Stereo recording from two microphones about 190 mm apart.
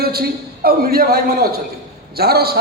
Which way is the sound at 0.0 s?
55° right (ahead or behind).